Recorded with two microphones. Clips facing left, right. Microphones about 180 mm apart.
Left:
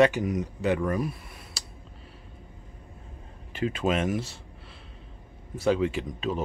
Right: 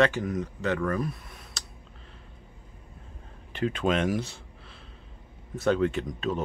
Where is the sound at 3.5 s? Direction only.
5° left (ahead or behind).